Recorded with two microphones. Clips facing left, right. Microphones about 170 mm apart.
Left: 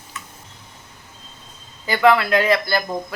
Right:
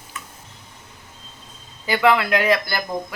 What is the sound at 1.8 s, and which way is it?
Speech, 15° right (ahead or behind).